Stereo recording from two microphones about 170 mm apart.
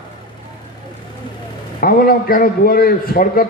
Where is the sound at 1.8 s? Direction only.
55° left (ahead or behind).